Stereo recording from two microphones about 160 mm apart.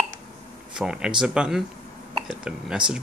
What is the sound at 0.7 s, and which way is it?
Speech, 5° right (ahead or behind).